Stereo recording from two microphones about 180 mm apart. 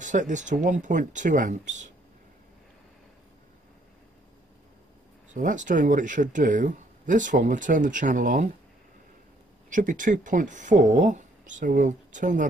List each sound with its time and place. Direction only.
0.0 s speech: 45° right (ahead or behind)
5.3 s speech: 45° right (ahead or behind)
9.7 s speech: 45° right (ahead or behind)